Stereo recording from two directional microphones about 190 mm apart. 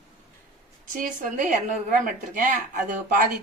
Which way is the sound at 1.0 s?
45° right (ahead or behind).